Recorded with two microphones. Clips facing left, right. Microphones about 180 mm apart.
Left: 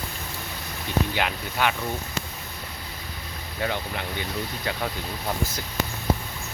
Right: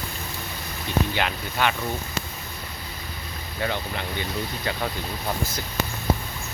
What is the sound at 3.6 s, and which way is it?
Speech, 5° left (ahead or behind).